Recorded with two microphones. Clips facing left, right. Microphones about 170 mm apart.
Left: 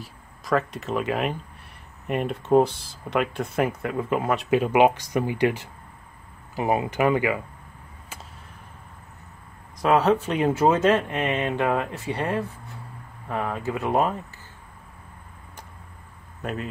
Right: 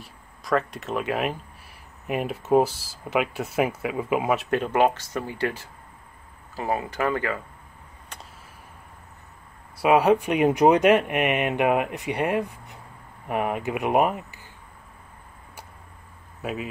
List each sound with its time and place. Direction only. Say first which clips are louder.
0.0 s speech: left 2 dB; centre (ahead or behind)
4.5 s speech: left 6 dB; 10° left (ahead or behind)
9.8 s speech: right 1 dB; 10° right (ahead or behind)
16.4 s speech: even; 5° right (ahead or behind)